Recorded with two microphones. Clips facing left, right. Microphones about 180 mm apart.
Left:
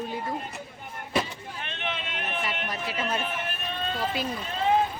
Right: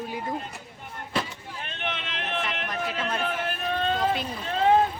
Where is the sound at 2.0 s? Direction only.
90° right.